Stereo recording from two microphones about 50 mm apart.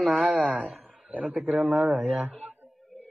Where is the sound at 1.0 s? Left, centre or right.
Right.